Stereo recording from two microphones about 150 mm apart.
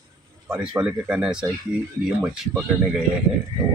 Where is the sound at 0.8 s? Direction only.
5° right (ahead or behind).